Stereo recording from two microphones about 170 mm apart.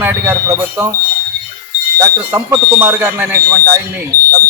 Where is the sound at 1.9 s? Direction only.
20° right (ahead or behind).